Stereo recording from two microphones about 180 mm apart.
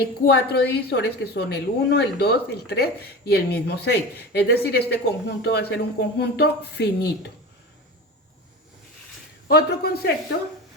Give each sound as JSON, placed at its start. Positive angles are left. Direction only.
{"t": 0.0, "sound": "a woman's voice", "side_deg": 65}
{"t": 9.5, "sound": "a woman's voice", "side_deg": 60}